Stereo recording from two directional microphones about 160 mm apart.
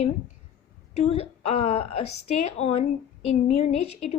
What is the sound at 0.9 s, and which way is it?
A woman's voice, 40° left (ahead or behind).